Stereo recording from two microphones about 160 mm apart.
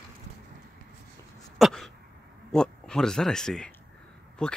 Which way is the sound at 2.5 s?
5° left (ahead or behind).